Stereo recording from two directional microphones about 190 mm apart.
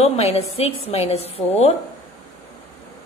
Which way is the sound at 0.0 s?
30° left (ahead or behind).